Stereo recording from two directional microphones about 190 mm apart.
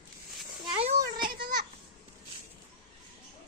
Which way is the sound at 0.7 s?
30° right (ahead or behind).